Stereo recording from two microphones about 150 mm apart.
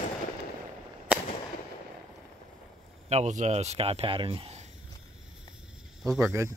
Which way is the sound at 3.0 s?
50° right (ahead or behind).